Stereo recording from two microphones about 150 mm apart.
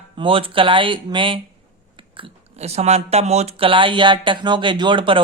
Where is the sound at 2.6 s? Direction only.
45° right (ahead or behind).